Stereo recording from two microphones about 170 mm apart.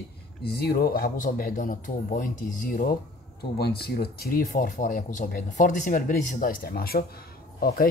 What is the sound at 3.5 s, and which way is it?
Speech, 65° left (ahead or behind).